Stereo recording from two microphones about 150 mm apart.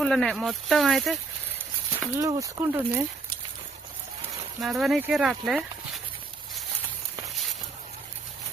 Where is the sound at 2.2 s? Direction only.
20° right (ahead or behind).